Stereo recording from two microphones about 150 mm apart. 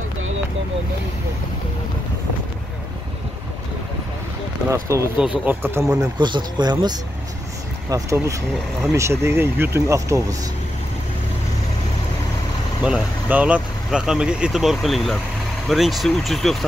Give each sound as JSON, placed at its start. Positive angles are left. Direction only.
{"t": 4.6, "sound": "speech", "side_deg": -20}
{"t": 6.1, "sound": "speech", "side_deg": -30}
{"t": 12.8, "sound": "speech", "side_deg": -10}